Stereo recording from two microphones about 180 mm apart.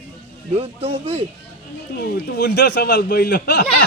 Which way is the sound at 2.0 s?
60° left (ahead or behind).